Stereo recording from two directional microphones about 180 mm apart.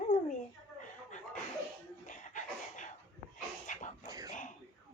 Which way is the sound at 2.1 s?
45° left (ahead or behind).